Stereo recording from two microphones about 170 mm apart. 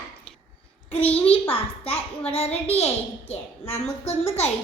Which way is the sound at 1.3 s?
35° left (ahead or behind).